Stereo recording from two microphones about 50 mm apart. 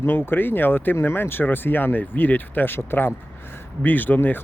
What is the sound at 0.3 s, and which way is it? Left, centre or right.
Speech, left.